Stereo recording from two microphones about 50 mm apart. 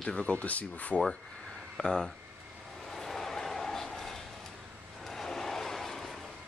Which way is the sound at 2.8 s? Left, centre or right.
Centre.